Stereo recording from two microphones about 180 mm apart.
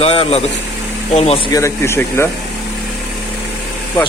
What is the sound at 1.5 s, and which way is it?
Speech, 15° left (ahead or behind).